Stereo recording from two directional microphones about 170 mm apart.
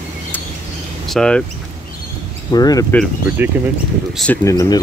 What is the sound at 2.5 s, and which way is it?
Speech, 25° left (ahead or behind).